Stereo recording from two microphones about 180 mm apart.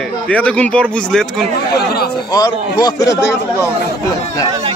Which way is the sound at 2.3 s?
20° left (ahead or behind).